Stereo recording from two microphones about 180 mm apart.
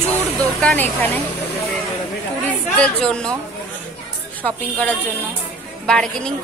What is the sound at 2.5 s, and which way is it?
Speech, 5° left (ahead or behind).